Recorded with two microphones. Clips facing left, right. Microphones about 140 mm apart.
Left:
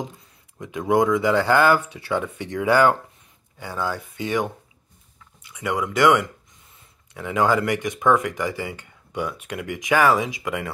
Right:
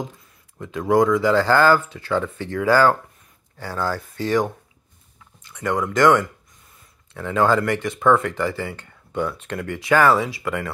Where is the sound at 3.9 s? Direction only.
15° left (ahead or behind).